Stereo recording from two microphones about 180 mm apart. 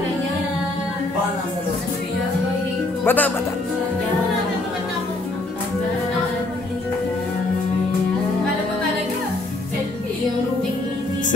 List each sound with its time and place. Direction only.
3.1 s speech: 10° left (ahead or behind)